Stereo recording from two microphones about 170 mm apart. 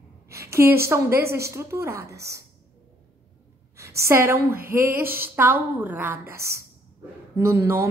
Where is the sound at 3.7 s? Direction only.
15° right (ahead or behind).